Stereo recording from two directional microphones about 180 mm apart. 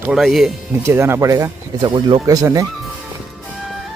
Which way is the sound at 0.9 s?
15° right (ahead or behind).